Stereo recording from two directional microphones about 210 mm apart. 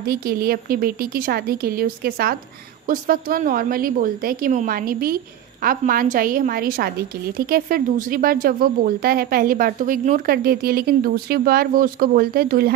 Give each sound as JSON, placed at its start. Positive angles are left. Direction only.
{"t": 0.0, "sound": "a woman's voice", "side_deg": -45}